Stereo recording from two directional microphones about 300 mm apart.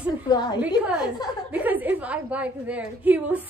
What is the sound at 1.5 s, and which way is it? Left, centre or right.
A woman's voice, centre.